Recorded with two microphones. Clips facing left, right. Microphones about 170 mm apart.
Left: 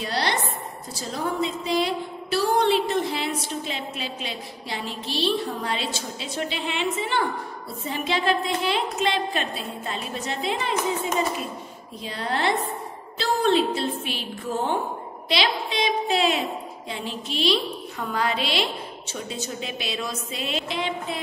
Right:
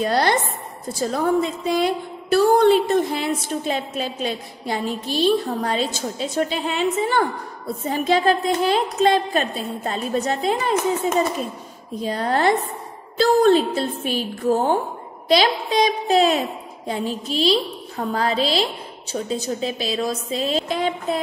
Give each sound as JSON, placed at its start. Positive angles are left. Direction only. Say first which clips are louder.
{"t": 0.0, "sound": "a woman's voice", "louder": "right 7 dB", "side_deg": -50}